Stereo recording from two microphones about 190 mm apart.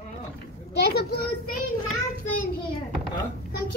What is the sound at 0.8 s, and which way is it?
Speech, 55° left (ahead or behind).